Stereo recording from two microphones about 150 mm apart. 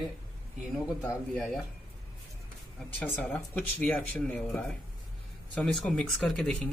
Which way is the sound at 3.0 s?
10° left (ahead or behind).